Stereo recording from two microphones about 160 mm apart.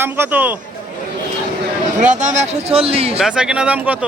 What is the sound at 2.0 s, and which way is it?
A man's voice, 50° right (ahead or behind).